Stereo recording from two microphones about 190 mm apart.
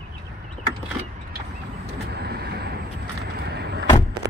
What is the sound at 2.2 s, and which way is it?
Vehicle, 55° right (ahead or behind).